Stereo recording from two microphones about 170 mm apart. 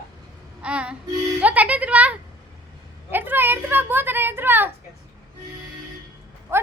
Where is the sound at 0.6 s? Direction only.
5° right (ahead or behind).